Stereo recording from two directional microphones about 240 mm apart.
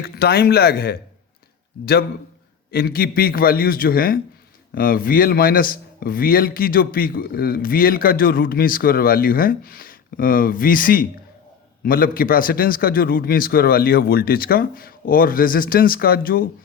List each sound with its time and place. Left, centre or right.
0.0 s a man's voice: left